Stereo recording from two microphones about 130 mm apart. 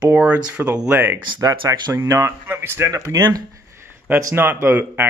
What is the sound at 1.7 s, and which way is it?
Speech, 20° right (ahead or behind).